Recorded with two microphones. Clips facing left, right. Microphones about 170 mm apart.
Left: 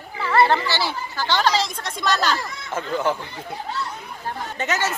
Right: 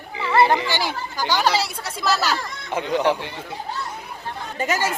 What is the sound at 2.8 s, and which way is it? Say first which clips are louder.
Speech: right 3 dB; 75° right (ahead or behind).